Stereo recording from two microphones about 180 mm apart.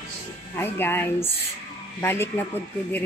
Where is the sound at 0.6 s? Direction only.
10° left (ahead or behind).